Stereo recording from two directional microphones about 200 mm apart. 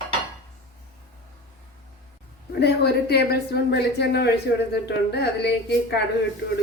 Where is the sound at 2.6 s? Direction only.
55° left (ahead or behind).